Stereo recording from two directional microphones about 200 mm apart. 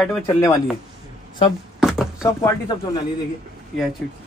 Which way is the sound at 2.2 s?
15° left (ahead or behind).